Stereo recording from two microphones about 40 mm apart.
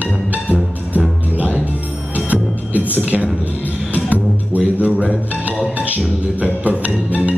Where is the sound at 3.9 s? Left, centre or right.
Right.